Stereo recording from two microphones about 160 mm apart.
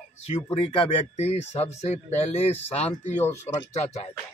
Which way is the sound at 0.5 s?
35° left (ahead or behind).